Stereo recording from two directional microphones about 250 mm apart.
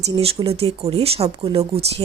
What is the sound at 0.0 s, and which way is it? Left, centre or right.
Speech, right.